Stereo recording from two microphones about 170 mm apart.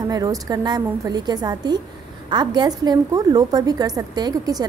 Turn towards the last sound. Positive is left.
turn(degrees=-20)  # may be behind; listen again after turning